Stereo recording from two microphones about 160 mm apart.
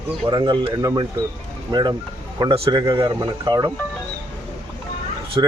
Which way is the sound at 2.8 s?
20° right (ahead or behind).